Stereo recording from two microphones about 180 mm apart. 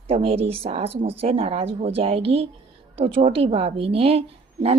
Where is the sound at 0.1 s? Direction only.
30° right (ahead or behind).